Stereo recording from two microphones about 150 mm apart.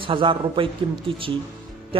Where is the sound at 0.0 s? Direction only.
35° right (ahead or behind).